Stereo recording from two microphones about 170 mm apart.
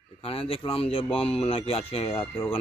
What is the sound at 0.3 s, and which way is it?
Speech, 35° left (ahead or behind).